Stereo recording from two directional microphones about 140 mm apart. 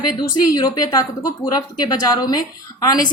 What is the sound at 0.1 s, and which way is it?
A woman's voice, 30° left (ahead or behind).